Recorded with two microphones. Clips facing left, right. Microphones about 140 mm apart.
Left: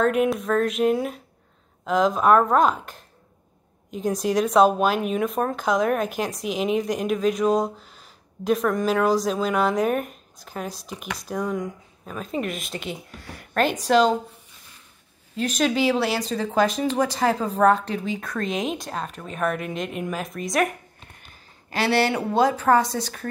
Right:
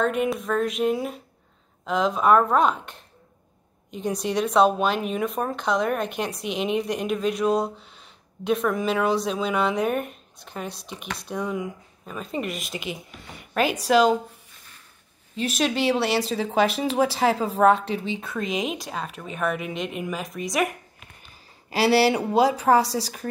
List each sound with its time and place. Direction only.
0.0 s speech: centre (ahead or behind)
15.3 s speech: centre (ahead or behind)
22.8 s a woman's voice: 35° right (ahead or behind)